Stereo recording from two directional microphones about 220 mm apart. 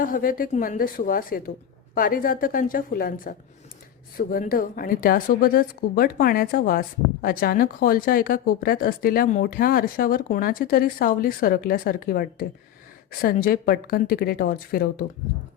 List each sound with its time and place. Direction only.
0.0 s a woman's voice: 40° left (ahead or behind)